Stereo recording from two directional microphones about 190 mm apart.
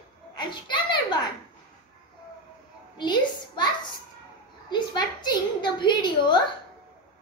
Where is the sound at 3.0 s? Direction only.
25° left (ahead or behind).